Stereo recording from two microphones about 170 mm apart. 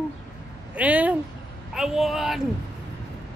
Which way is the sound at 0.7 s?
10° right (ahead or behind).